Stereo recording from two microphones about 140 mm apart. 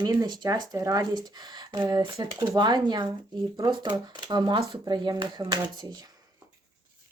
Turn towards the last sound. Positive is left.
turn(degrees=-30)  # may be behind; listen again after turning